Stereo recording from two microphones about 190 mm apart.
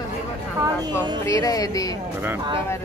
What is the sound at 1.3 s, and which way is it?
Music, 20° left (ahead or behind).